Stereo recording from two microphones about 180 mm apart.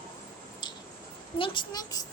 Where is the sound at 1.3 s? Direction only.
25° left (ahead or behind).